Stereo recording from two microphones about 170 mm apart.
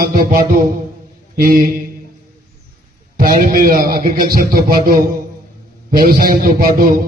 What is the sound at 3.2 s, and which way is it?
A man's voice, 55° right (ahead or behind).